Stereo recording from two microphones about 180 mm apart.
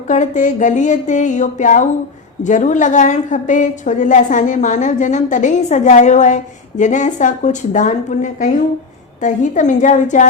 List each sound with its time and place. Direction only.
0.1 s a woman's voice: 45° left (ahead or behind)